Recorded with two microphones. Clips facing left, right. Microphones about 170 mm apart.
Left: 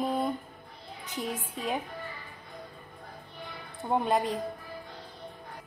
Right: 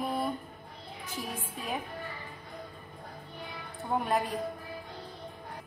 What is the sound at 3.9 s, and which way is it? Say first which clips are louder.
Speech: left 3 dB; 25° left (ahead or behind).